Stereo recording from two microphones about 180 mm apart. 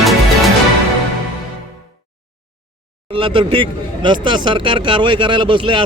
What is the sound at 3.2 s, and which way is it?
Speech, 30° right (ahead or behind).